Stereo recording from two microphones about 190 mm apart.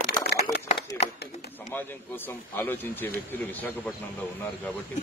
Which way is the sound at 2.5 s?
10° left (ahead or behind).